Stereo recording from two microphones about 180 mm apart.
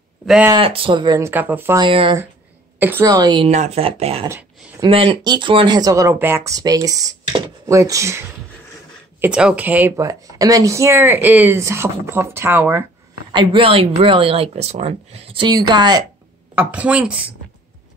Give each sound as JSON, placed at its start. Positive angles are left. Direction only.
{"t": 0.5, "sound": "speech", "side_deg": -30}
{"t": 1.8, "sound": "speech", "side_deg": -30}
{"t": 2.8, "sound": "speech", "side_deg": -10}
{"t": 3.1, "sound": "speech", "side_deg": -25}
{"t": 3.4, "sound": "speech", "side_deg": -40}
{"t": 4.3, "sound": "a sound", "side_deg": -10}
{"t": 4.8, "sound": "speech", "side_deg": -30}
{"t": 9.2, "sound": "speech", "side_deg": -5}
{"t": 13.3, "sound": "speech", "side_deg": -25}
{"t": 16.5, "sound": "speech", "side_deg": -10}